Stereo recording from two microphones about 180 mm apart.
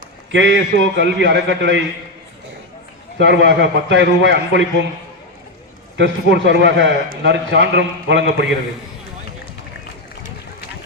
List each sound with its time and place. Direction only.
0.3 s a man's voice: 85° right
3.2 s a man's voice: 80° right
6.0 s a man's voice: 80° right